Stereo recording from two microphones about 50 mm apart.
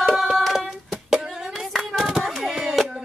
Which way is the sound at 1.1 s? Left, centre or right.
Centre.